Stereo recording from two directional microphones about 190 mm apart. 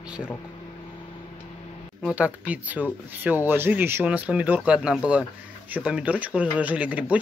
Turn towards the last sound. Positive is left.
turn(degrees=-10)  # may be behind; listen again after turning